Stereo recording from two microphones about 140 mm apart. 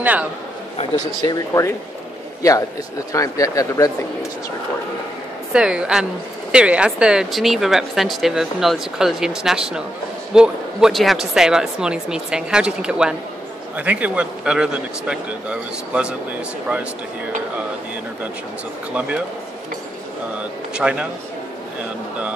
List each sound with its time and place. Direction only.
0.0 s a man's voice: 10° right (ahead or behind)
1.2 s speech: 25° left (ahead or behind)
3.1 s speech: 25° left (ahead or behind)
5.5 s a man's voice: 5° right (ahead or behind)
18.9 s a man's voice: 10° right (ahead or behind)
20.7 s a man's voice: 5° right (ahead or behind)